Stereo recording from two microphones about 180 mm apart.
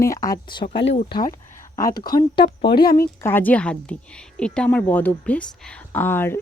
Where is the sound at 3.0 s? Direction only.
10° left (ahead or behind).